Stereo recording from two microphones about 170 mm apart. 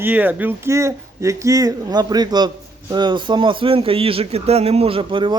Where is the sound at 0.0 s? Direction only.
10° right (ahead or behind).